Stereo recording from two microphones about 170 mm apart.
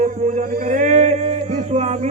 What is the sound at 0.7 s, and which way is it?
Music, 45° right (ahead or behind).